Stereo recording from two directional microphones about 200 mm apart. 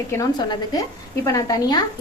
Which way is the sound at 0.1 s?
15° left (ahead or behind).